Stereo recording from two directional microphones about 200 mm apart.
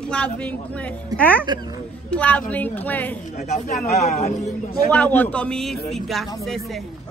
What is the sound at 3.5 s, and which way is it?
A man's voice, 35° left (ahead or behind).